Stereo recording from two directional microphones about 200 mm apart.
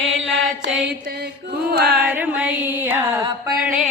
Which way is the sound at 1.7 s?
55° right (ahead or behind).